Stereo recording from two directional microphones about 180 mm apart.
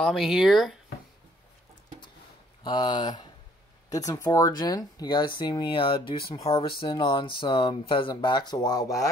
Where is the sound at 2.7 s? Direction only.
25° left (ahead or behind).